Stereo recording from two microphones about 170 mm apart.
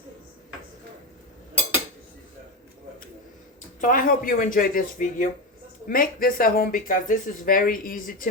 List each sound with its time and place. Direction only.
3.8 s speech: 55° left (ahead or behind)